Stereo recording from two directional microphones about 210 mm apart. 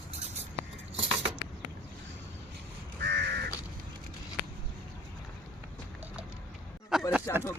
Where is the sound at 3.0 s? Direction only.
50° right (ahead or behind).